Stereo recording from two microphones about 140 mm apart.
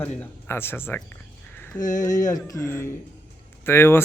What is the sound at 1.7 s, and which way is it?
Speech, 65° left (ahead or behind).